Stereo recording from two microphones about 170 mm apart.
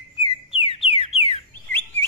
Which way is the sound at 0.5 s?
35° left (ahead or behind).